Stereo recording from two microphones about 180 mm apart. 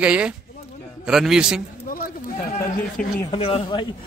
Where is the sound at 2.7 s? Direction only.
50° left (ahead or behind).